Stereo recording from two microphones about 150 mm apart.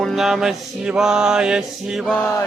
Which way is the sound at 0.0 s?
Centre (ahead or behind).